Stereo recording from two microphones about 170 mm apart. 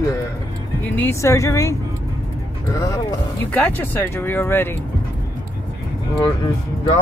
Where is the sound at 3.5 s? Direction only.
10° left (ahead or behind).